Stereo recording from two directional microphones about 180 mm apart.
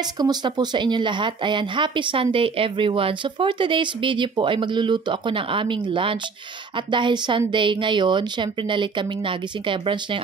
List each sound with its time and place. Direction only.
0.2 s speech: 25° right (ahead or behind)